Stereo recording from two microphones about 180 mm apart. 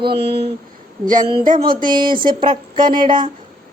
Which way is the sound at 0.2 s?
35° right (ahead or behind).